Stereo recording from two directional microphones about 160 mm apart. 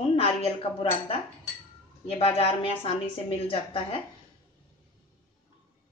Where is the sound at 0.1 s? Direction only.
35° left (ahead or behind).